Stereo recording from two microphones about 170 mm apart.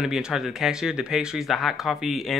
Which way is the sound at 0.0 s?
5° right (ahead or behind).